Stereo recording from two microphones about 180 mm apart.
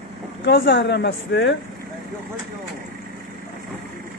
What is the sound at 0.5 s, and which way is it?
Speech, 80° left.